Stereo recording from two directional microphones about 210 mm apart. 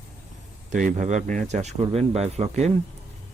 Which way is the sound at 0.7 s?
35° right (ahead or behind).